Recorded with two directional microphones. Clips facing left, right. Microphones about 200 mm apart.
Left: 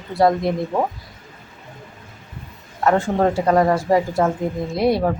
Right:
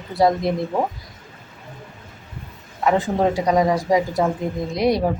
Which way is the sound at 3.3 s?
15° right (ahead or behind).